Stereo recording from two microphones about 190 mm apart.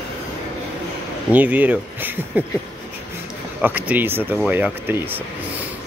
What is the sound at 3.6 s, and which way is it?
Speech, 10° right (ahead or behind).